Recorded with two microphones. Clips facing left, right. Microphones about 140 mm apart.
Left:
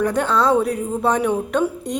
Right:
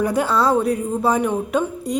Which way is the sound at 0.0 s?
10° right (ahead or behind).